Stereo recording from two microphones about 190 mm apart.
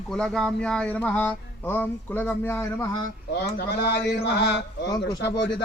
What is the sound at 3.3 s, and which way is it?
Speech, 60° left (ahead or behind).